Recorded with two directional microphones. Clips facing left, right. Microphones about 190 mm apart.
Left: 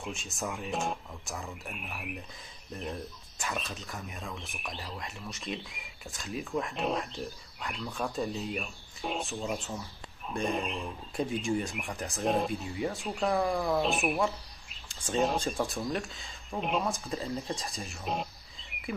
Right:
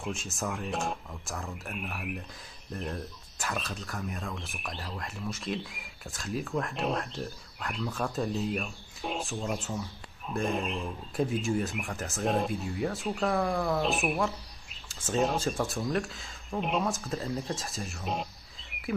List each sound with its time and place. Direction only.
0.0 s speech: centre (ahead or behind)